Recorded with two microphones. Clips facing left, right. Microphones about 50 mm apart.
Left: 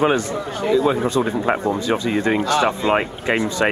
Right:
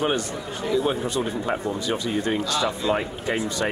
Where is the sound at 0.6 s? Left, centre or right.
Left.